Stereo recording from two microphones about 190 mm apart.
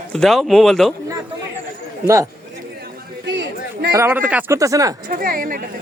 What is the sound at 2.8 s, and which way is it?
Chatter, 60° right (ahead or behind).